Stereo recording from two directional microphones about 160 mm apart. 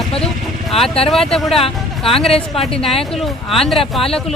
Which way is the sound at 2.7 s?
Centre (ahead or behind).